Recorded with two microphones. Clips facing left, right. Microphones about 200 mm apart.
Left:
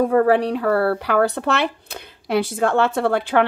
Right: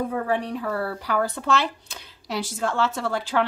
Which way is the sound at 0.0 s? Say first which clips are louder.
Left 9 dB; 70° left (ahead or behind).